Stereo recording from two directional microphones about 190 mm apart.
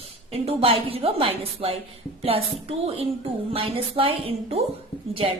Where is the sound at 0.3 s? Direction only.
30° right (ahead or behind).